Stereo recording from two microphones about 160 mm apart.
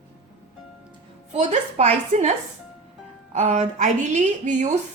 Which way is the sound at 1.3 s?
45° right (ahead or behind).